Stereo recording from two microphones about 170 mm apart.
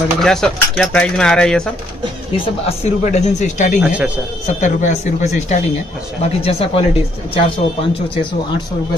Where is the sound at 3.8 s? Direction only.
5° right (ahead or behind).